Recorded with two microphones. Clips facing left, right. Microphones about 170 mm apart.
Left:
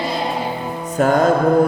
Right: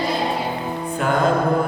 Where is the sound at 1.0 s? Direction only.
40° left (ahead or behind).